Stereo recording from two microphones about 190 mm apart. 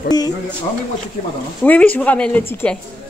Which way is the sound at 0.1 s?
20° left (ahead or behind).